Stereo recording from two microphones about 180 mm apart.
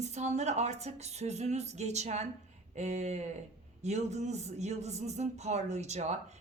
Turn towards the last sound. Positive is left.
turn(degrees=-40)  # may be behind; listen again after turning